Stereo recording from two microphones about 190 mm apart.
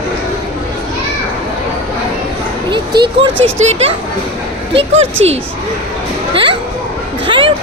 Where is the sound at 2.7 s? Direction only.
25° right (ahead or behind).